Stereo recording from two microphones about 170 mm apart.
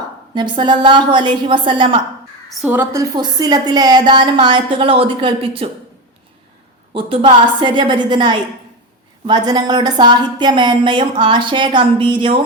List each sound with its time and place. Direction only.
0.3 s a woman's voice: 25° right (ahead or behind)
2.5 s a woman's voice: centre (ahead or behind)
2.7 s a woman's voice: 20° right (ahead or behind)
6.9 s a woman's voice: 30° right (ahead or behind)